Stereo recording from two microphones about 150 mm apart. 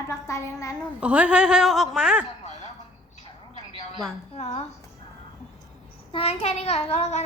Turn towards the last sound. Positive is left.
turn(degrees=45)  # may be behind; listen again after turning